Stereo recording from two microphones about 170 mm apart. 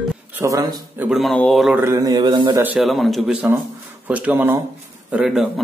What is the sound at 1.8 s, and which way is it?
Mantra, 20° right (ahead or behind).